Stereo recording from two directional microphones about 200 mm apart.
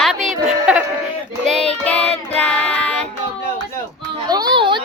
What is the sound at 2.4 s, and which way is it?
Child singing, 5° left (ahead or behind).